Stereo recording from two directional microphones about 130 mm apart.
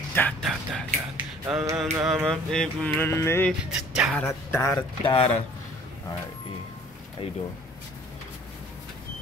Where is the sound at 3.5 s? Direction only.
5° right (ahead or behind).